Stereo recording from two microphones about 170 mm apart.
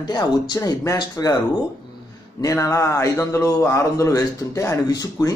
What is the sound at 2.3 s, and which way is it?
Speech, 20° left (ahead or behind).